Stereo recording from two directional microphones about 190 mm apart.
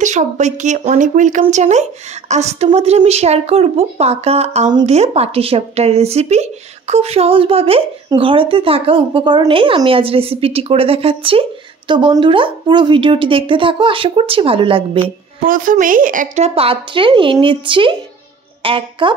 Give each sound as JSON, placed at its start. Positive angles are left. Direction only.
{"t": 0.0, "sound": "a woman's voice", "side_deg": -40}
{"t": 15.4, "sound": "a woman's voice", "side_deg": -45}